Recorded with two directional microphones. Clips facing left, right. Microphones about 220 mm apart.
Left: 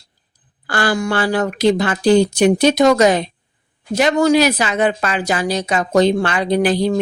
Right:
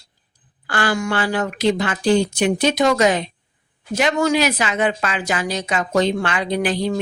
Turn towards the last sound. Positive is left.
turn(degrees=35)  # may be behind; listen again after turning